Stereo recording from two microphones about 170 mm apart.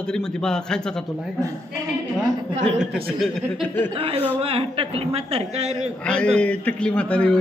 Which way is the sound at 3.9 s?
35° right (ahead or behind).